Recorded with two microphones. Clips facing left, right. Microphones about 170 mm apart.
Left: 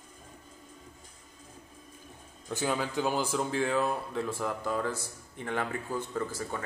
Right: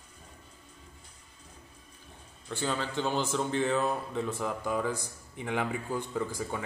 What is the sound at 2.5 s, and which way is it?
Speech, 10° left (ahead or behind).